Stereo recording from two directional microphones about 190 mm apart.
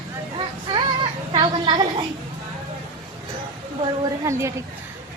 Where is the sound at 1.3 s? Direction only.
25° right (ahead or behind).